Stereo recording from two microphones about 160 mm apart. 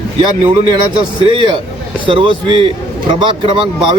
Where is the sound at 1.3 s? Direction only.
35° right (ahead or behind).